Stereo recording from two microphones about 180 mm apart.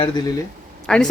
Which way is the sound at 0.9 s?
5° left (ahead or behind).